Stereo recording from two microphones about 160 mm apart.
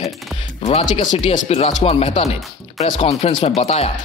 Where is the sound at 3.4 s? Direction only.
40° left (ahead or behind).